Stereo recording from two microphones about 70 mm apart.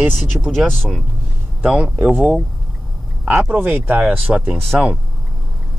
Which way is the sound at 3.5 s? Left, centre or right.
Right.